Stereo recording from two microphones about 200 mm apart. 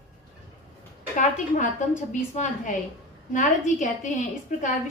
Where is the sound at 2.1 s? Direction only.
40° left (ahead or behind).